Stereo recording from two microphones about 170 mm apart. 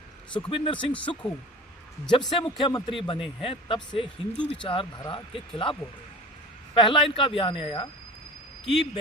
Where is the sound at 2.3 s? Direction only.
30° left (ahead or behind).